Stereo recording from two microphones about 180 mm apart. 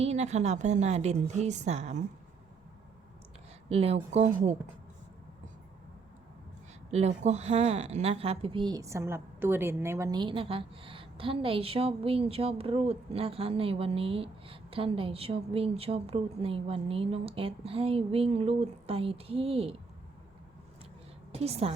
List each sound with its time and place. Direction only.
0.0 s a woman's voice: 40° right (ahead or behind)
3.7 s a woman's voice: 35° right (ahead or behind)
6.9 s a woman's voice: 40° right (ahead or behind)
21.3 s a woman's voice: 35° right (ahead or behind)